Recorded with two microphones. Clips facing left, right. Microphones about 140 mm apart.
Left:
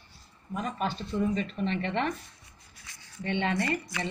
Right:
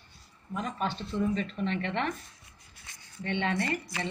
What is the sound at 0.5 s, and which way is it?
Speech, 10° left (ahead or behind).